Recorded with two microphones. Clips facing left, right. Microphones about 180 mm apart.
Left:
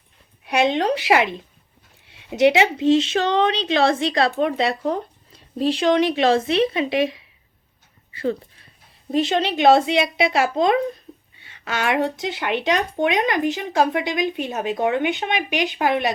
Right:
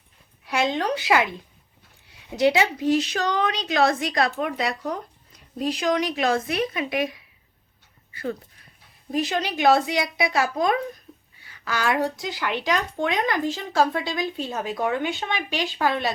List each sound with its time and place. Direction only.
0.4 s speech: 20° left (ahead or behind)